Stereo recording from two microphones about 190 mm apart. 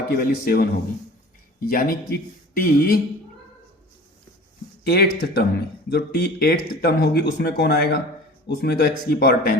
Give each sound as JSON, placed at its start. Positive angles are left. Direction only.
{"t": 0.1, "sound": "a man's voice", "side_deg": 55}
{"t": 4.8, "sound": "speech", "side_deg": 55}